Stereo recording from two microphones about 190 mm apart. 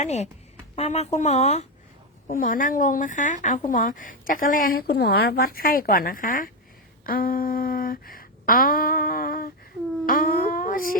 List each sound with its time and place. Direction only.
0.0 s speech: 35° left (ahead or behind)
2.2 s a woman's voice: 45° left (ahead or behind)
10.1 s a sound: 50° left (ahead or behind)